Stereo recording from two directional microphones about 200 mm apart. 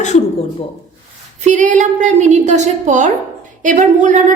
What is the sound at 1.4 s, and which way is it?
A woman's voice, 40° right (ahead or behind).